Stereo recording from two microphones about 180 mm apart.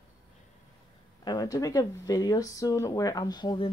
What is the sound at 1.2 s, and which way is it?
Speech, 20° left (ahead or behind).